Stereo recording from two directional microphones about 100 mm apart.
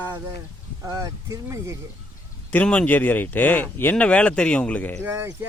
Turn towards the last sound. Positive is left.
turn(degrees=-20)  # may be behind; listen again after turning